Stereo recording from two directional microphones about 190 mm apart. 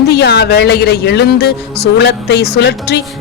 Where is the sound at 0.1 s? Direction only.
60° left (ahead or behind).